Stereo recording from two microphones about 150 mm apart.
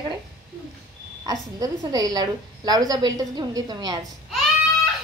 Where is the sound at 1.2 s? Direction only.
25° right (ahead or behind).